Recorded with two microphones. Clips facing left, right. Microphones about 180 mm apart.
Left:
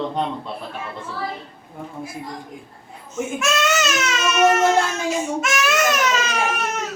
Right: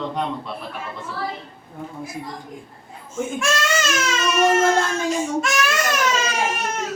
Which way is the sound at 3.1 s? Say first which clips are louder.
Left 1 dB; centre (ahead or behind).